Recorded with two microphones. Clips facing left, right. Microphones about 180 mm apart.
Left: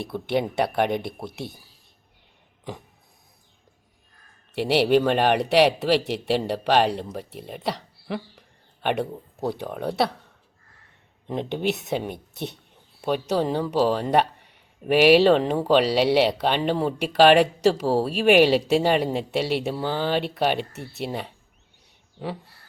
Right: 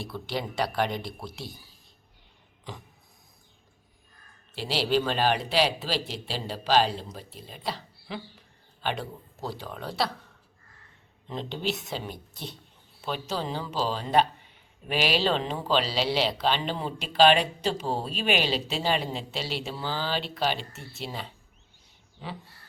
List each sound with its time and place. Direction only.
0.0 s speech: 60° left (ahead or behind)
4.5 s speech: 60° left (ahead or behind)
11.5 s speech: 60° left (ahead or behind)